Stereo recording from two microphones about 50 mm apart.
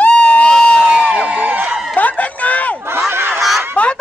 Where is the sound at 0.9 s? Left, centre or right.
Right.